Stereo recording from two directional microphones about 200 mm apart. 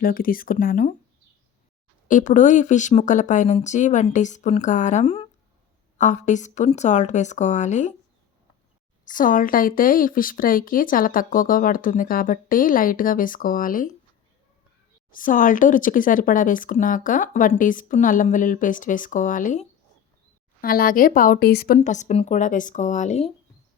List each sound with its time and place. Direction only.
0.0 s a woman's voice: 45° left (ahead or behind)
2.0 s speech: 40° left (ahead or behind)
9.0 s a woman's voice: 40° left (ahead or behind)
15.1 s a woman's voice: 40° left (ahead or behind)
21.8 s speech: 35° left (ahead or behind)